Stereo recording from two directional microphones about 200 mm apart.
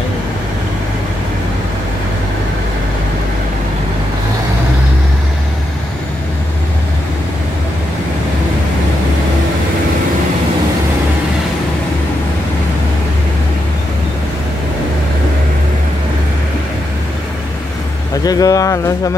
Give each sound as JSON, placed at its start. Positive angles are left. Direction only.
{"t": 18.2, "sound": "speech", "side_deg": 20}